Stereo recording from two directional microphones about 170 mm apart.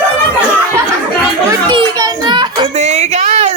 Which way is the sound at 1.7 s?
25° right (ahead or behind).